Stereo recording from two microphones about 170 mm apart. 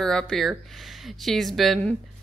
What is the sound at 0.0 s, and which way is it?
Speech, 5° left (ahead or behind).